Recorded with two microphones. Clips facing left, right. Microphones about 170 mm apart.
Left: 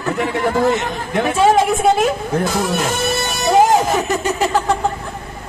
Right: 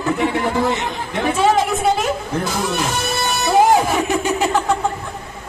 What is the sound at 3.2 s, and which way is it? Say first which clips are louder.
Music: left 1 dB; 50° left (ahead or behind).